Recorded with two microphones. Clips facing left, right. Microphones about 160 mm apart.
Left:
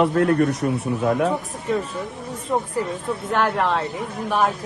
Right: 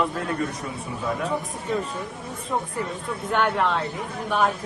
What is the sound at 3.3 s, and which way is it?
Speech, centre (ahead or behind).